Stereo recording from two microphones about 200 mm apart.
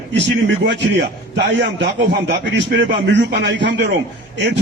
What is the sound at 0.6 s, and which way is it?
Speech, 60° right (ahead or behind).